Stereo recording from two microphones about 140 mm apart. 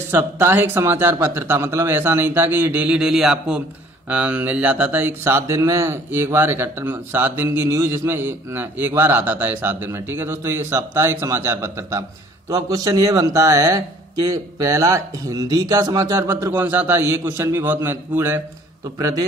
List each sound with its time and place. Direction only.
0.1 s speech: 15° right (ahead or behind)